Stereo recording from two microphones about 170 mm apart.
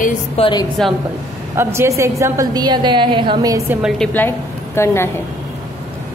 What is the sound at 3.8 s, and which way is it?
A woman's voice, 5° left (ahead or behind).